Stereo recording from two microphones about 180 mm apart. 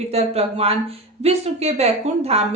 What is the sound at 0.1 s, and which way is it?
A woman's voice, 35° right (ahead or behind).